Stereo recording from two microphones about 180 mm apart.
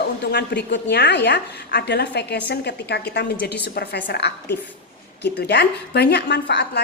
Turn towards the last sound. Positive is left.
turn(degrees=65)  # may be behind; listen again after turning